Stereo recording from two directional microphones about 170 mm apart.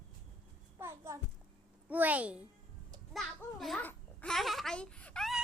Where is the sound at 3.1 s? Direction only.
Centre (ahead or behind).